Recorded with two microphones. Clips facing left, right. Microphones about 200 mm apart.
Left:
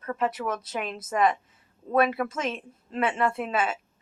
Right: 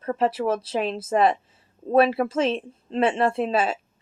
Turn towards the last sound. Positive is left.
turn(degrees=-30)  # may be behind; listen again after turning